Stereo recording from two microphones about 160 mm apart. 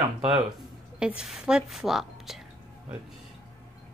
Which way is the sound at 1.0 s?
5° right (ahead or behind).